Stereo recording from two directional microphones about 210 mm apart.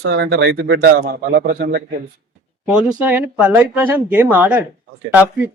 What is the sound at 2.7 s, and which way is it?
Speech, 5° right (ahead or behind).